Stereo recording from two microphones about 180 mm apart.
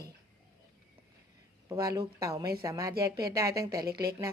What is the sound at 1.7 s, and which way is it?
Speech, 20° right (ahead or behind).